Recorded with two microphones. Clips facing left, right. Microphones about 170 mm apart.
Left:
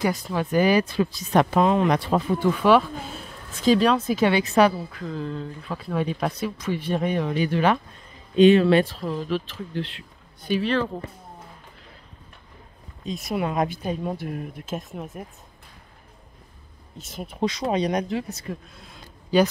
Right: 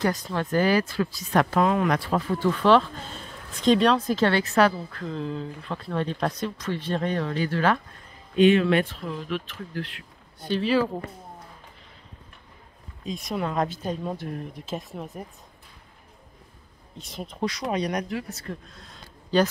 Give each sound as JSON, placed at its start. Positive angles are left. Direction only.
{"t": 0.0, "sound": "speech", "side_deg": 10}
{"t": 8.4, "sound": "speech", "side_deg": 30}
{"t": 10.6, "sound": "speech", "side_deg": -5}
{"t": 13.0, "sound": "speech", "side_deg": 5}
{"t": 17.0, "sound": "speech", "side_deg": 5}
{"t": 17.4, "sound": "speech", "side_deg": 25}
{"t": 18.5, "sound": "a sound", "side_deg": 5}